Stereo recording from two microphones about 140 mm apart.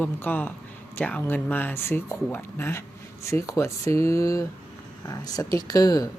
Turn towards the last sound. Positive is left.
turn(degrees=25)  # may be behind; listen again after turning